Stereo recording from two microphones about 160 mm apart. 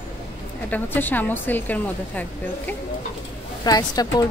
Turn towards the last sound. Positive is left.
turn(degrees=25)  # may be behind; listen again after turning